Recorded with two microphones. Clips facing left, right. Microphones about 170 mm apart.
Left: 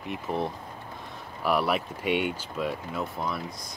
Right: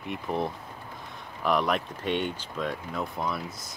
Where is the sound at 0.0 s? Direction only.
Centre (ahead or behind).